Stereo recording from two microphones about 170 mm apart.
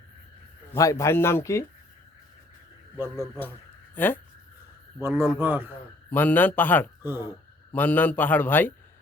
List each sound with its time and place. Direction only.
0.7 s a man's voice: 20° left (ahead or behind)
3.9 s speech: 10° left (ahead or behind)
4.9 s a man's voice: 15° right (ahead or behind)
6.1 s a man's voice: 10° left (ahead or behind)